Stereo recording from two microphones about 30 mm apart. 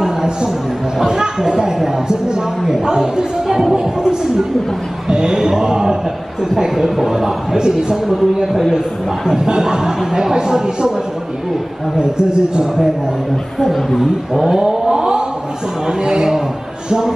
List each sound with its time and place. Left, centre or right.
0.0 s a sound: right
1.0 s speech: right
3.4 s speech: centre
3.7 s speech: right
9.2 s speech: centre
12.0 s speech: right
13.9 s speech: centre
14.6 s vehicle: right
15.9 s speech: right